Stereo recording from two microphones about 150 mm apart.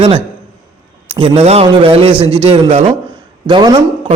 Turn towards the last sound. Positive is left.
turn(degrees=-25)  # may be behind; listen again after turning